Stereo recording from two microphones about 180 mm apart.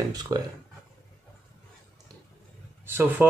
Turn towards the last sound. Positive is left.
turn(degrees=-10)  # may be behind; listen again after turning